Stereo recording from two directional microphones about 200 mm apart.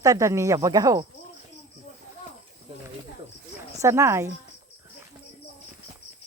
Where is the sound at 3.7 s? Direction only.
15° right (ahead or behind).